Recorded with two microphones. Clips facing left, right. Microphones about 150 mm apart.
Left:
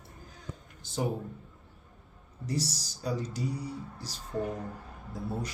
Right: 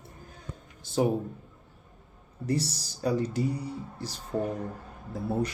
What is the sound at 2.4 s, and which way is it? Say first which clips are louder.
Speech: right 4 dB; 60° right (ahead or behind).